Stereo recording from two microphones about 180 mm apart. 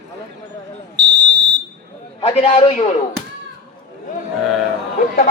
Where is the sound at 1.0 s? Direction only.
75° right (ahead or behind).